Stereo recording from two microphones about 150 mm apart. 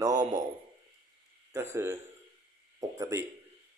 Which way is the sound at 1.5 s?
15° right (ahead or behind).